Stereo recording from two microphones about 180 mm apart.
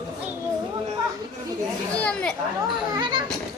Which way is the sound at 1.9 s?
5° left (ahead or behind).